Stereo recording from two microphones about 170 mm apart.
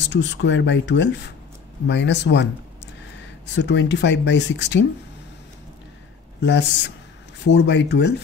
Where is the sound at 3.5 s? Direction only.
90° left.